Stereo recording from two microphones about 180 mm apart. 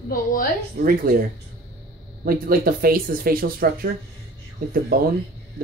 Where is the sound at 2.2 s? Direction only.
55° right (ahead or behind).